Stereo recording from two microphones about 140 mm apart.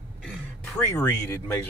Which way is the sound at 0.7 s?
15° left (ahead or behind).